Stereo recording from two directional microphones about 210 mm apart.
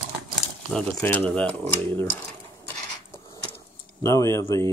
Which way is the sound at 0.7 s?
5° left (ahead or behind).